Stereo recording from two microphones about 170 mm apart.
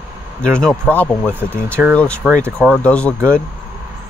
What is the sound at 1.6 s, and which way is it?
Speech, 15° right (ahead or behind).